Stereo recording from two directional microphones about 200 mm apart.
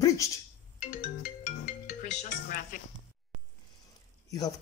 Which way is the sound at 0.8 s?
40° left (ahead or behind).